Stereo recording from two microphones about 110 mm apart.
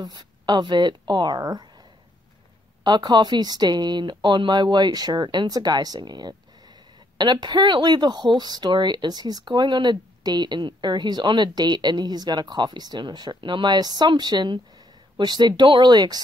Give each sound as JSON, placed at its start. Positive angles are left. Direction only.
{"t": 0.0, "sound": "speech", "side_deg": -40}
{"t": 2.8, "sound": "speech", "side_deg": -40}